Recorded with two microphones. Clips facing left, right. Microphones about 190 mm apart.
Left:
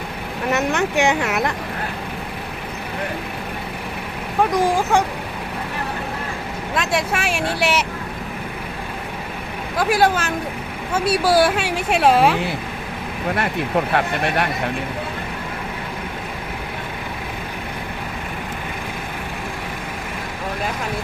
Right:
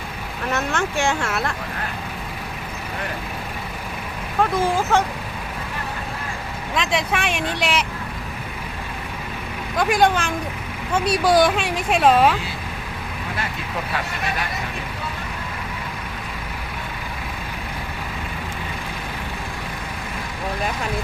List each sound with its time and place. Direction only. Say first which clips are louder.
0.5 s speech: left 4 dB; 20° left (ahead or behind)
4.5 s speech: left 2 dB; 15° left (ahead or behind)
6.7 s speech: left 1 dB; 5° left (ahead or behind)
9.7 s speech: left 1 dB; 5° left (ahead or behind)
13.3 s speech: left 9 dB; 60° left (ahead or behind)